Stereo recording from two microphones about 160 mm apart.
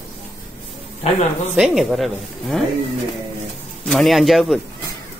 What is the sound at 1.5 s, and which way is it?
Speech, 5° right (ahead or behind).